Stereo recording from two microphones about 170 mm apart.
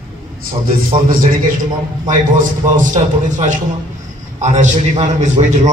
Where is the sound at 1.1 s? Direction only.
55° right (ahead or behind).